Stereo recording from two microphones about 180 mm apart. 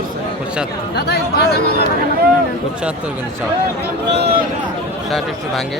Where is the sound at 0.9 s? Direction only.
65° left (ahead or behind).